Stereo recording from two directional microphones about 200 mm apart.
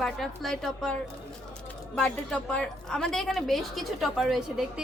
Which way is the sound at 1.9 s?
5° left (ahead or behind).